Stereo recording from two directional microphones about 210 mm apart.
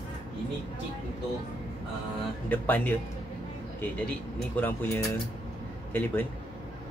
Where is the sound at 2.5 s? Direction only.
10° left (ahead or behind).